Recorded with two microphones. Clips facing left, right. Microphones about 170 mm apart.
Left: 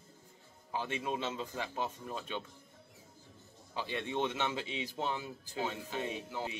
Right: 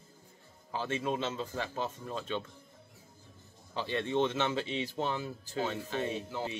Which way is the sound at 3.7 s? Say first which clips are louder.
Right 5 dB; 10° left (ahead or behind).